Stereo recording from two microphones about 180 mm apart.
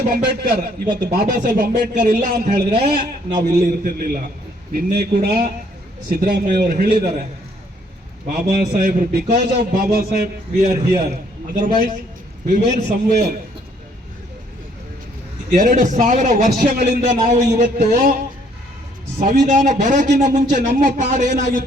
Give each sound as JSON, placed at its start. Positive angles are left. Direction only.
{"t": 0.5, "sound": "a man's voice", "side_deg": -60}
{"t": 8.3, "sound": "a man's voice", "side_deg": -55}
{"t": 10.6, "sound": "a man's voice", "side_deg": -40}
{"t": 15.4, "sound": "a man's voice", "side_deg": -45}
{"t": 16.6, "sound": "a man's voice", "side_deg": -65}
{"t": 17.2, "sound": "a man's voice", "side_deg": -45}
{"t": 19.2, "sound": "a man's voice", "side_deg": -45}